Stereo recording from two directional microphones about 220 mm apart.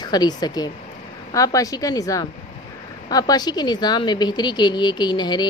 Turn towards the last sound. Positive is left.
turn(degrees=20)  # may be behind; listen again after turning